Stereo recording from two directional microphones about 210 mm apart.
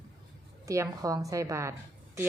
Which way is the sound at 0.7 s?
15° right (ahead or behind).